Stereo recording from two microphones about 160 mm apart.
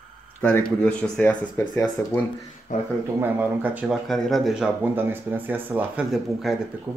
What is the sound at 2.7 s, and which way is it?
Speech, 55° left (ahead or behind).